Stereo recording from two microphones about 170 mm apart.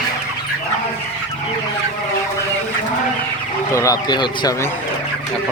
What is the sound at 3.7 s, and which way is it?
Speech, 20° left (ahead or behind).